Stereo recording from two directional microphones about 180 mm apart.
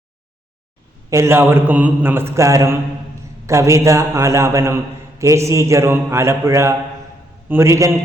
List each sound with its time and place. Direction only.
1.1 s mantra: 15° right (ahead or behind)